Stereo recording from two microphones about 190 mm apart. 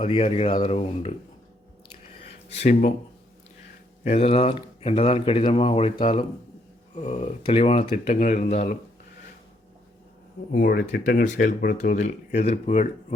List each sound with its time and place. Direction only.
0.0 s speech: 30° left (ahead or behind)
2.2 s a sound: 35° left (ahead or behind)
4.0 s speech: 35° left (ahead or behind)
10.5 s speech: 50° left (ahead or behind)